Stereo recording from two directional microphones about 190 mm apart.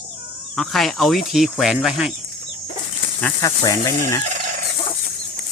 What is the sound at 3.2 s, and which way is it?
Speech, 15° left (ahead or behind).